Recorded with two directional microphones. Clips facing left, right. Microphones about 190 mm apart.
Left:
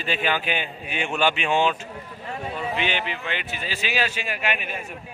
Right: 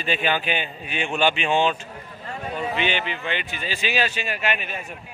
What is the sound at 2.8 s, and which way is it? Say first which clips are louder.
A man's voice: right 2 dB; centre (ahead or behind).